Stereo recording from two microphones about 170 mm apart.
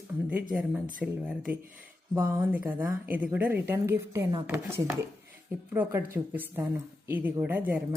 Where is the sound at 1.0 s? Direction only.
5° right (ahead or behind).